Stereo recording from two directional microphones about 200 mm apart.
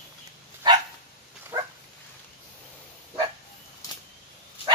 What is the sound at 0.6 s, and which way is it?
Dog, 20° right (ahead or behind).